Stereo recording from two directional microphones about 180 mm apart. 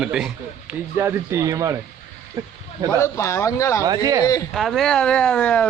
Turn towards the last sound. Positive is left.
turn(degrees=5)  # may be behind; listen again after turning